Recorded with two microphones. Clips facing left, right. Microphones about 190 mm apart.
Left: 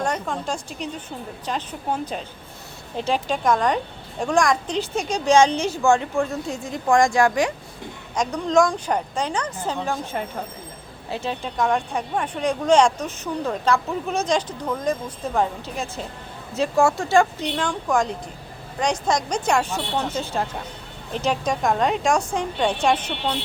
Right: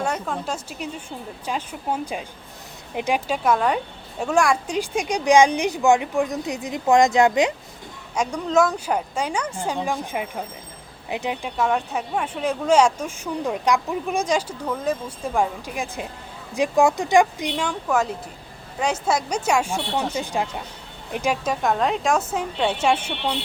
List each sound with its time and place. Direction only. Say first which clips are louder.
0.0 s speech: left 1 dB; 5° right (ahead or behind)
8.1 s a woman's voice: left 1 dB; 10° right (ahead or behind)